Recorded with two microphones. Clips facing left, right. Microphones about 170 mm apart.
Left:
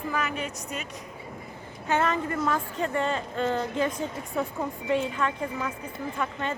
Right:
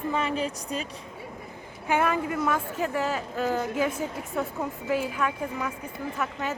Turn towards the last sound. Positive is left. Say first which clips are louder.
# even
turn(degrees=-5)  # may be behind; listen again after turning